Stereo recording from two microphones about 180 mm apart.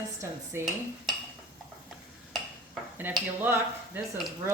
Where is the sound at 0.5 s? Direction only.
15° right (ahead or behind).